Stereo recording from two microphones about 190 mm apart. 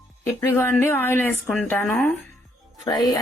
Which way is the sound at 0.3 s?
10° left (ahead or behind).